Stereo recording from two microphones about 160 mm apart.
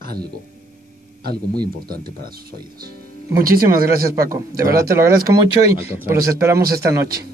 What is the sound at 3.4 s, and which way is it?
Speech, 65° right (ahead or behind).